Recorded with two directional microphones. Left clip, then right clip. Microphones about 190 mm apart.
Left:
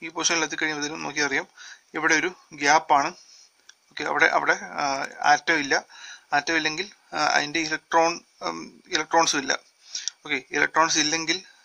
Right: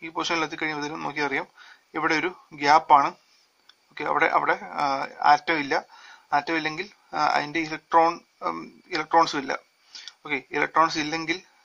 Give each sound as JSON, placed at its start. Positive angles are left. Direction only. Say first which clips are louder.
{"t": 0.0, "sound": "speech", "louder": "left 2 dB", "side_deg": 45}